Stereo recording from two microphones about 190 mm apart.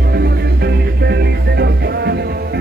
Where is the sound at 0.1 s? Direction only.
60° right (ahead or behind).